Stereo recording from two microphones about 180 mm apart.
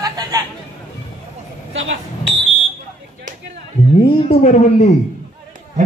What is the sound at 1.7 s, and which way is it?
Speech, 90° right.